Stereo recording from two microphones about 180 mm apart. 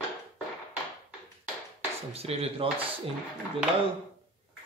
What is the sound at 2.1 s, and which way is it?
Speech, 35° right (ahead or behind).